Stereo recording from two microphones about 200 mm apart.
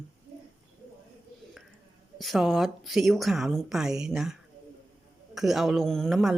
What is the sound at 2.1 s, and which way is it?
A woman's voice, centre (ahead or behind).